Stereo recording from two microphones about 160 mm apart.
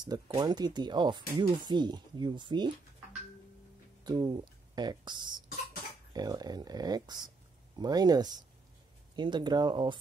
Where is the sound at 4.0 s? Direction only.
25° right (ahead or behind).